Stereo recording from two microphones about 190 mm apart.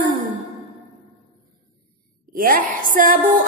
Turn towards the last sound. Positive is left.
turn(degrees=-45)  # may be behind; listen again after turning